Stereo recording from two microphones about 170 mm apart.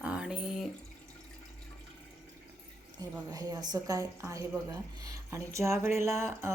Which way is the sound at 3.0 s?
20° right (ahead or behind).